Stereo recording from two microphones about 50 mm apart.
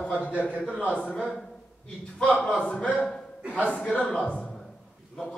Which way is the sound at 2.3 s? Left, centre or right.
Left.